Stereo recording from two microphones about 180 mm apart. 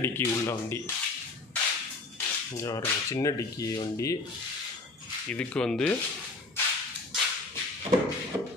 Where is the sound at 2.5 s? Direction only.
20° left (ahead or behind).